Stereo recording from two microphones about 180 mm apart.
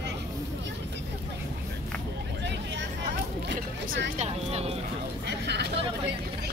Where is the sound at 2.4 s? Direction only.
75° right (ahead or behind).